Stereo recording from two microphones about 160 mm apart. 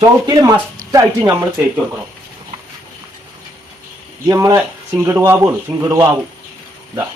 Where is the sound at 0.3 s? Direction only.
25° right (ahead or behind).